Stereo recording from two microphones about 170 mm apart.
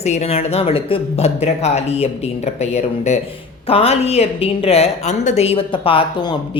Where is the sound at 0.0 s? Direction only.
40° left (ahead or behind).